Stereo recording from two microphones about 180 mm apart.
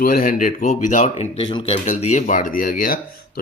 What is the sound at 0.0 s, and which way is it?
Speech, 50° left (ahead or behind).